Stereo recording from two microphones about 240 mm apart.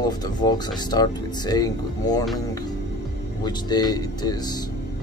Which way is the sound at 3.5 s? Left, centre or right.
Centre.